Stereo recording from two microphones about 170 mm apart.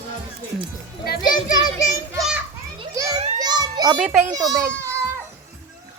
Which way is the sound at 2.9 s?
20° right (ahead or behind).